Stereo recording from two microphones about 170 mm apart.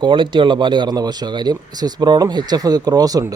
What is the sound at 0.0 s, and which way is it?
Speech, 30° right (ahead or behind).